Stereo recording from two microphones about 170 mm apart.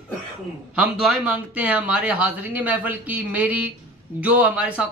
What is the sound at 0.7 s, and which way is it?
Speech, 5° right (ahead or behind).